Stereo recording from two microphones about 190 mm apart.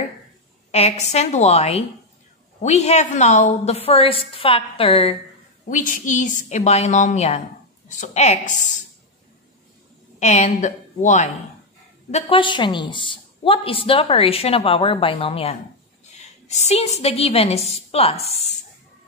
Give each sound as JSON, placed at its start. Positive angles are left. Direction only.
{"t": 0.7, "sound": "a woman's voice", "side_deg": 35}
{"t": 5.7, "sound": "a woman's voice", "side_deg": 40}
{"t": 10.1, "sound": "a woman's voice", "side_deg": 40}